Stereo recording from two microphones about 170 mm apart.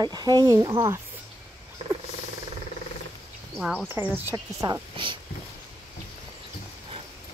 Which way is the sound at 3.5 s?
Centre (ahead or behind).